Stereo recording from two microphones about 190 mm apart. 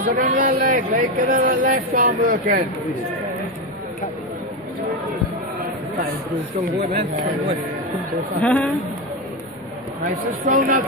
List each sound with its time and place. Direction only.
0.0 s a man's voice: 45° right (ahead or behind)
8.1 s speech: 5° left (ahead or behind)
10.4 s a man's voice: 45° right (ahead or behind)